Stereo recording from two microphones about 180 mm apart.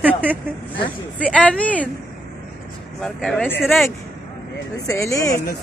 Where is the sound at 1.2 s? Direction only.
5° left (ahead or behind).